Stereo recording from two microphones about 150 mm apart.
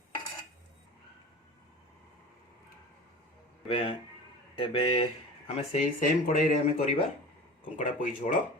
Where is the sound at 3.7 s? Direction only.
35° left (ahead or behind).